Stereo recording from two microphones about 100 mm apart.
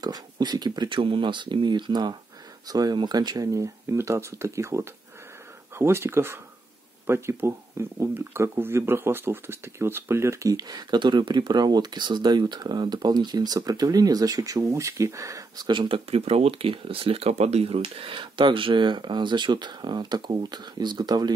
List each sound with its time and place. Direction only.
0.0 s speech: 45° right (ahead or behind); by 10.5 s 30° right (ahead or behind)
10.5 s speech: 40° right (ahead or behind)
16.1 s speech: 85° right; by 21.3 s 45° right (ahead or behind)